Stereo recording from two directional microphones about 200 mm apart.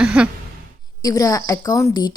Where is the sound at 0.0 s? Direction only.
5° right (ahead or behind).